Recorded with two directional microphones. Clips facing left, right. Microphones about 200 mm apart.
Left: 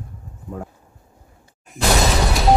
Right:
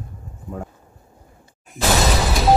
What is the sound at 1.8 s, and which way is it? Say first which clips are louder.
Shatter: even; centre (ahead or behind).